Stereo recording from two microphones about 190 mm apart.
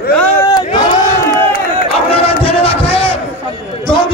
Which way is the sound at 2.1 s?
30° left (ahead or behind).